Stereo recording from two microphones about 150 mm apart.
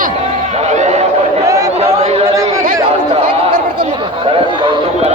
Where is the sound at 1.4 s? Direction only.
20° right (ahead or behind).